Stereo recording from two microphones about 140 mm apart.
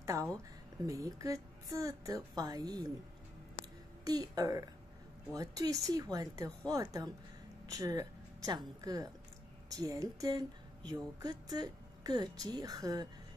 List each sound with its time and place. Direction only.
0.0 s a woman's voice: 20° right (ahead or behind)
4.0 s a woman's voice: 25° right (ahead or behind)